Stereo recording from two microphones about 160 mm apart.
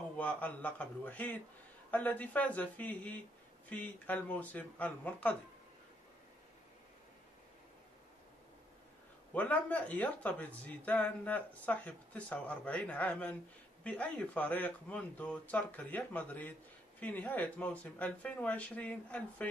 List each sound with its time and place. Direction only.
0.2 s speech: 10° left (ahead or behind)
9.3 s speech: 10° left (ahead or behind)